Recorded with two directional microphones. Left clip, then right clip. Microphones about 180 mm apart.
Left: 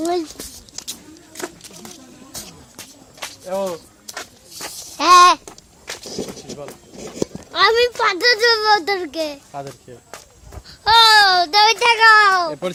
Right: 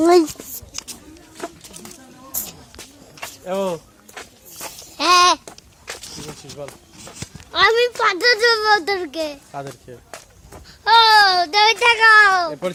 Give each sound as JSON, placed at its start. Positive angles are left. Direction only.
{"t": 0.0, "sound": "speech", "side_deg": -55}
{"t": 3.4, "sound": "speech", "side_deg": -50}
{"t": 4.1, "sound": "a sound", "side_deg": 45}
{"t": 4.9, "sound": "babbling", "side_deg": 5}
{"t": 5.5, "sound": "a sound", "side_deg": 25}
{"t": 7.5, "sound": "a child's voice", "side_deg": 10}
{"t": 10.7, "sound": "a child's voice", "side_deg": 20}